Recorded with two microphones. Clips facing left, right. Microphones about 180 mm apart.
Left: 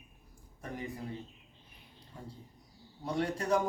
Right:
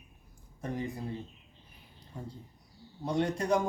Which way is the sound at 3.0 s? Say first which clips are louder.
Right 3 dB; 25° right (ahead or behind).